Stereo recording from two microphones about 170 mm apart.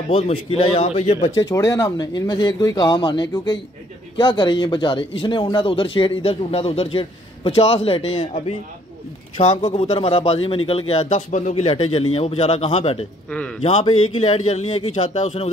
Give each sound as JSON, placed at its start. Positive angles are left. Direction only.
{"t": 0.1, "sound": "speech", "side_deg": 35}
{"t": 1.3, "sound": "speech", "side_deg": 20}
{"t": 13.3, "sound": "a man's voice", "side_deg": 10}
{"t": 13.6, "sound": "speech", "side_deg": 35}